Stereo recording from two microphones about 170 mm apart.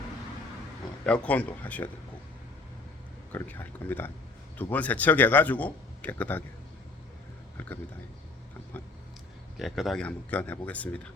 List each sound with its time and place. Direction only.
1.0 s speech: 5° left (ahead or behind)
3.3 s speech: 10° left (ahead or behind)
9.6 s speech: centre (ahead or behind)